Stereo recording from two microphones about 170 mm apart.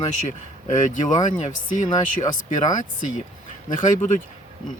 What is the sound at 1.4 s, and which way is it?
Speech, 45° left (ahead or behind).